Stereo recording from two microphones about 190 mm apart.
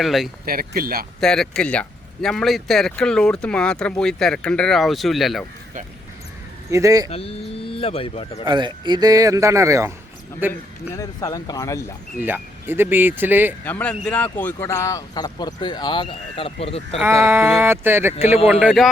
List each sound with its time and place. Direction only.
0.0 s speech: centre (ahead or behind)
0.4 s speech: 50° right (ahead or behind)
1.2 s speech: 5° left (ahead or behind)
6.7 s speech: 15° right (ahead or behind)
7.1 s speech: 30° left (ahead or behind)
8.4 s speech: 25° right (ahead or behind)
10.9 s speech: 20° left (ahead or behind)
12.2 s speech: 10° right (ahead or behind)
13.7 s speech: 10° left (ahead or behind); by 17.0 s 30° left (ahead or behind)
17.0 s speech: 15° right (ahead or behind)